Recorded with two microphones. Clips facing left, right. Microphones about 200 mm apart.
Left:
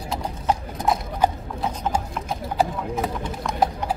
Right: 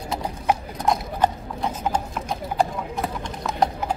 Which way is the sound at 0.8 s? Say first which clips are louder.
Even; 5° left (ahead or behind).